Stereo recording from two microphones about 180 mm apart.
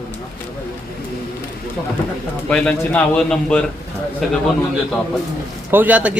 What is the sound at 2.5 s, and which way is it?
A man's voice, 5° left (ahead or behind).